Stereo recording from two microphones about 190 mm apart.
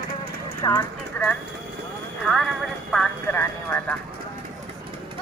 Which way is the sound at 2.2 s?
Centre (ahead or behind).